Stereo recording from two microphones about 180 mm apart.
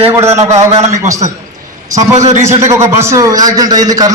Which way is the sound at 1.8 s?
20° right (ahead or behind).